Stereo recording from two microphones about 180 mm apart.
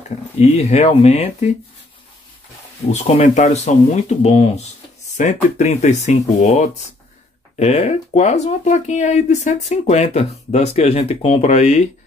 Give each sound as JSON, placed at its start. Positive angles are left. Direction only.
{"t": 0.4, "sound": "speech", "side_deg": 35}
{"t": 2.9, "sound": "speech", "side_deg": 40}